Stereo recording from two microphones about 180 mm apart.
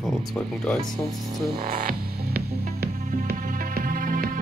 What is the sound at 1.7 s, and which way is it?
Music, 55° right (ahead or behind).